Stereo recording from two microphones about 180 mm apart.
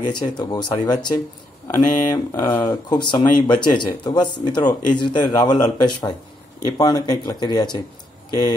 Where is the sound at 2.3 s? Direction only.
15° left (ahead or behind).